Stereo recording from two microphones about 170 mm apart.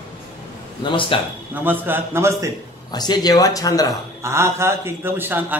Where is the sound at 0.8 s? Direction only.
30° left (ahead or behind).